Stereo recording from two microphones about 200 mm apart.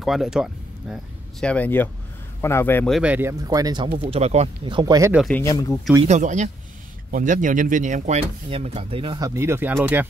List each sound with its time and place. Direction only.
0.0 s speech: centre (ahead or behind)
3.0 s speech: 10° right (ahead or behind)
5.1 s speech: centre (ahead or behind)
5.4 s speech: 15° left (ahead or behind)
6.0 s speech: 35° right (ahead or behind); by 9.8 s 10° right (ahead or behind)